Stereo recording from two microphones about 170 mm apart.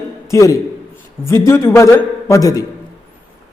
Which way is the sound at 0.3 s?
20° left (ahead or behind).